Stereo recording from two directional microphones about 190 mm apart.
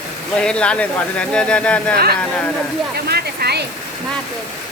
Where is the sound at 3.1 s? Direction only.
55° right (ahead or behind).